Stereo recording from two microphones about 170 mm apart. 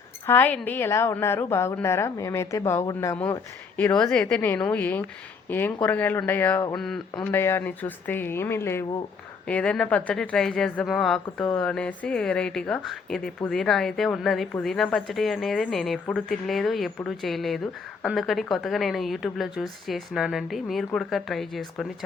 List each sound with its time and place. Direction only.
0.3 s a woman's voice: 10° left (ahead or behind)
7.2 s a woman's voice: 15° left (ahead or behind)